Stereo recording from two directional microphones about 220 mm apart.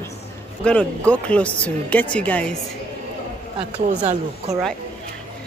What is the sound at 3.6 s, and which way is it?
Speech, 30° right (ahead or behind).